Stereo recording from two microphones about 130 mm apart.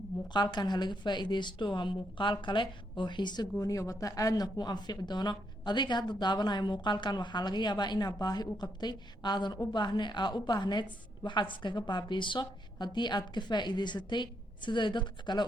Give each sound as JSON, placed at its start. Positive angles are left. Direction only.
{"t": 0.3, "sound": "a woman's voice", "side_deg": 35}